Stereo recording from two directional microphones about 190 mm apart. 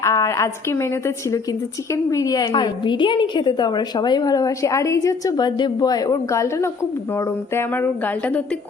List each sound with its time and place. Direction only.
0.0 s a woman's voice: 15° left (ahead or behind)